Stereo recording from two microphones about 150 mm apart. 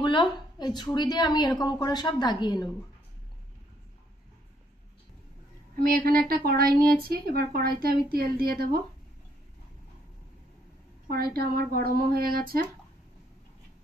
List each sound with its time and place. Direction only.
0.0 s a woman's voice: 30° left (ahead or behind)
5.8 s a woman's voice: 75° right (ahead or behind)
11.1 s a woman's voice: 90° right